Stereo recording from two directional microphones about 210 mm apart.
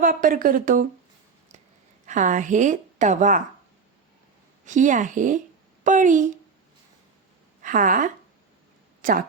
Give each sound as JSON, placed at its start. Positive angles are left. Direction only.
{"t": 0.0, "sound": "a woman's voice", "side_deg": -40}
{"t": 2.0, "sound": "a woman's voice", "side_deg": -35}
{"t": 4.6, "sound": "a woman's voice", "side_deg": -35}
{"t": 7.6, "sound": "a woman's voice", "side_deg": -40}
{"t": 9.0, "sound": "a sound", "side_deg": -40}